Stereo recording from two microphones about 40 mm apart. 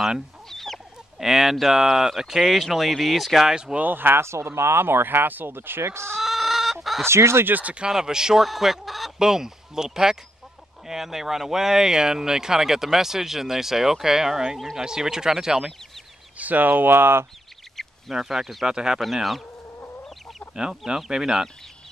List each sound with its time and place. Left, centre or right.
0.5 s chicken: centre
1.1 s speech: centre
3.9 s speech: right
6.2 s chicken: centre
7.1 s speech: right
7.9 s speech: centre
8.4 s speech: centre
9.2 s speech: centre
16.3 s speech: right
16.9 s speech: right
17.8 s duck: centre
18.1 s speech: centre
18.7 s speech: centre
20.5 s speech: centre